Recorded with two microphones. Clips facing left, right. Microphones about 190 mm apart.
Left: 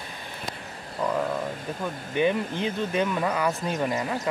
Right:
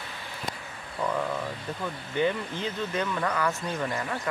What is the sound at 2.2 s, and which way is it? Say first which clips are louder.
Speech: left 3 dB; 15° left (ahead or behind).